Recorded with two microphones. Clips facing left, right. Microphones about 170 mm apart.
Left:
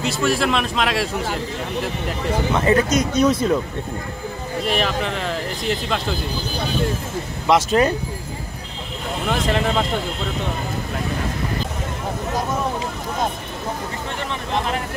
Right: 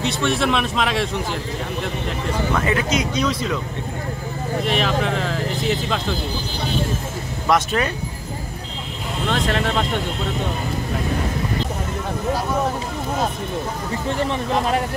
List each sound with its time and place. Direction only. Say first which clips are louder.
0.0 s a man's voice: even; centre (ahead or behind)
2.5 s speech: left 4 dB; 35° left (ahead or behind); by 3.5 s 50° left (ahead or behind)
4.6 s a man's voice: even; centre (ahead or behind)
7.4 s speech: left 3 dB; 30° left (ahead or behind)
9.3 s a man's voice: left 1 dB; 5° left (ahead or behind)